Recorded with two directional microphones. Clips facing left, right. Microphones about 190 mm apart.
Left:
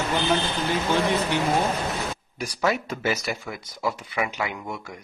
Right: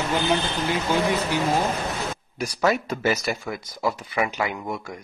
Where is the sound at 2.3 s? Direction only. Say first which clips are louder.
Right 3 dB; 45° right (ahead or behind).